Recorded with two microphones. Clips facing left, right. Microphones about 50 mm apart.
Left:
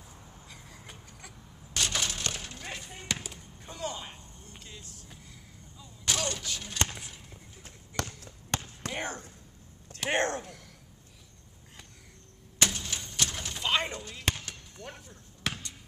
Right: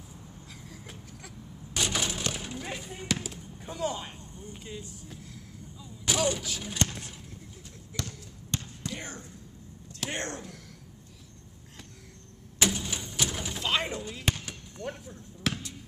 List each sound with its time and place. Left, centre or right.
0.5 s vehicle: centre
1.7 s a sound: centre
4.5 s vehicle: centre
5.0 s vehicle: centre
6.9 s a sound: centre
7.9 s basketball bounce: centre
8.5 s basketball bounce: left
8.8 s speech: left
12.5 s a sound: centre
14.4 s basketball bounce: centre